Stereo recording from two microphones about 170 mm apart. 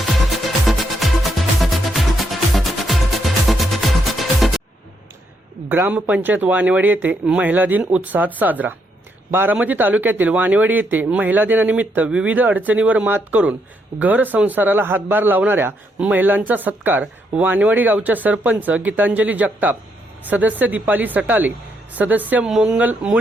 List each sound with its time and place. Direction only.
0.3 s music: centre (ahead or behind)
5.6 s speech: 10° right (ahead or behind)